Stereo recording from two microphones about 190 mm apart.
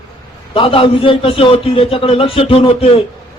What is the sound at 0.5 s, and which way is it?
A man's voice, 30° left (ahead or behind).